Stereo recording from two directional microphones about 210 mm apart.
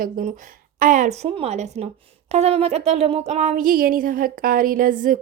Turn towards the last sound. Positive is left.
turn(degrees=-40)  # may be behind; listen again after turning